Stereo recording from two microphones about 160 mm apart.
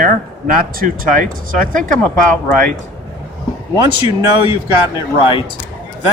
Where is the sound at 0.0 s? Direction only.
60° right (ahead or behind).